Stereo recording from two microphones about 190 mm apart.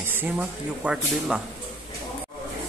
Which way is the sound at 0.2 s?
10° right (ahead or behind).